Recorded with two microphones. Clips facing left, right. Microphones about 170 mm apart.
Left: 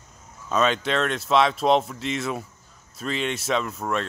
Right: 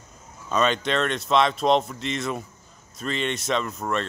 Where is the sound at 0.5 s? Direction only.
5° left (ahead or behind).